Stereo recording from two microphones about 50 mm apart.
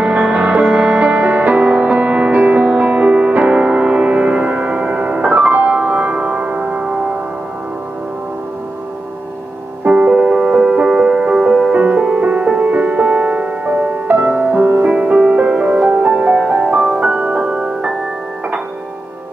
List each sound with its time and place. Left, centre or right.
0.0 s music: right
9.8 s music: right
11.7 s music: right
14.0 s music: right
14.8 s music: right
16.1 s music: centre